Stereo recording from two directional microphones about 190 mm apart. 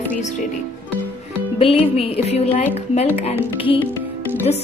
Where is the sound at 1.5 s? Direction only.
30° left (ahead or behind).